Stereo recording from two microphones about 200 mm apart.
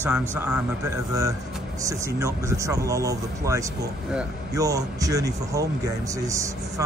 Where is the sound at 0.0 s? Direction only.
10° right (ahead or behind).